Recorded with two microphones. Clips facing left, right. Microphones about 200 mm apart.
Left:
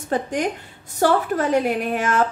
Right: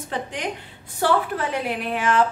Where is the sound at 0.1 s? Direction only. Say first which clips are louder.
Left 7 dB; 45° left (ahead or behind).